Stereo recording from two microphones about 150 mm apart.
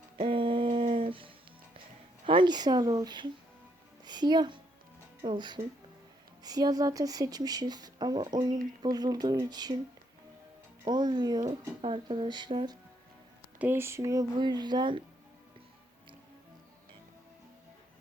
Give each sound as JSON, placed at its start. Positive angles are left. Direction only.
{"t": 0.2, "sound": "a sound", "side_deg": -35}
{"t": 2.2, "sound": "speech", "side_deg": -35}
{"t": 4.0, "sound": "music", "side_deg": -30}
{"t": 5.2, "sound": "speech", "side_deg": -30}
{"t": 10.8, "sound": "speech", "side_deg": -30}
{"t": 13.6, "sound": "speech", "side_deg": -15}